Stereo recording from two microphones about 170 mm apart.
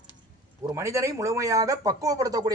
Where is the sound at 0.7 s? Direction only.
15° right (ahead or behind).